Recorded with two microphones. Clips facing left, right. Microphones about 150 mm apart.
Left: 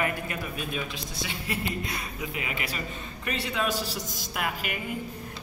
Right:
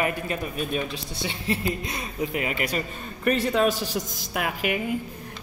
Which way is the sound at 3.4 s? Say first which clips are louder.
Right 7 dB; 45° right (ahead or behind).